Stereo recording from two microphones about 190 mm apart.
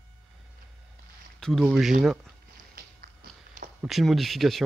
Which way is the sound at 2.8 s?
50° right (ahead or behind).